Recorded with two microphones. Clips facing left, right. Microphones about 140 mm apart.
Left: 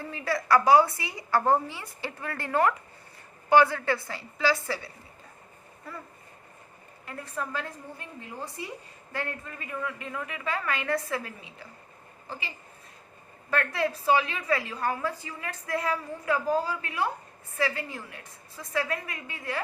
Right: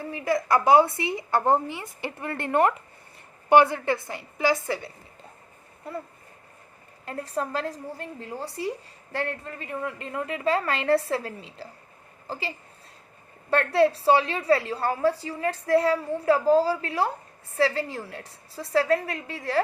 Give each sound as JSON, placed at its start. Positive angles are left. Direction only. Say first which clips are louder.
{"t": 0.0, "sound": "a woman's voice", "louder": "right 5 dB", "side_deg": -15}
{"t": 7.0, "sound": "a woman's voice", "louder": "right 6 dB", "side_deg": -35}